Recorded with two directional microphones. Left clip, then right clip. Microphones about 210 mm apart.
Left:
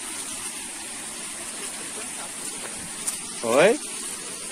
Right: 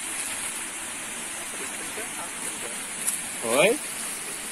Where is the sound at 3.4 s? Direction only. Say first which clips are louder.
Left 4 dB; 20° left (ahead or behind).